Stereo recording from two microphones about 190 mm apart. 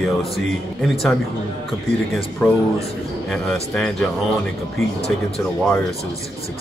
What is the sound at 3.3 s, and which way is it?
Speech, centre (ahead or behind).